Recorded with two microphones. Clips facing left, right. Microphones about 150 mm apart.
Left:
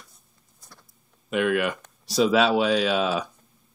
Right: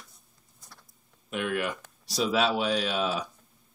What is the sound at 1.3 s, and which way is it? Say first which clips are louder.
Speech: left 7 dB; 85° left.